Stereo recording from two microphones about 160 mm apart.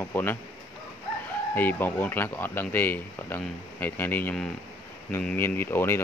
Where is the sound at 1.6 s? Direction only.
10° left (ahead or behind).